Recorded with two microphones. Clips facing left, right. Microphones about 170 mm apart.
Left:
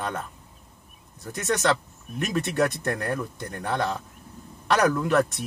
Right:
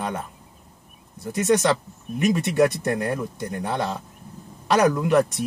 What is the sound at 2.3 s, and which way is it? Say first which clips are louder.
Speech: right 5 dB; 15° right (ahead or behind).